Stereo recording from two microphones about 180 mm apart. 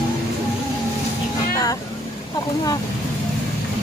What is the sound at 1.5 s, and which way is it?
Vehicle, 20° left (ahead or behind).